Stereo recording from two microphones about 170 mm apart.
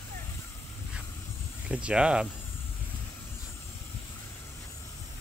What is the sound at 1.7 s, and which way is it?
Speech, 5° right (ahead or behind).